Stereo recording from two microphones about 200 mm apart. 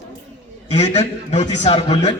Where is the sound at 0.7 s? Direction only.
35° left (ahead or behind).